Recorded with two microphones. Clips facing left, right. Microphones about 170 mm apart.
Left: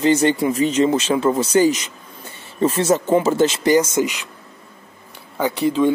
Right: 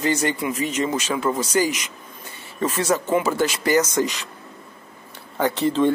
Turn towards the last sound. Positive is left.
turn(degrees=5)  # may be behind; listen again after turning